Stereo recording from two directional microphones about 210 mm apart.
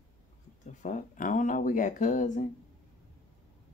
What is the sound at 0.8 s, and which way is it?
Speech, 40° left (ahead or behind).